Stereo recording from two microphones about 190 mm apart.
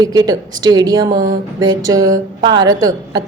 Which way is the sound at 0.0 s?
20° right (ahead or behind).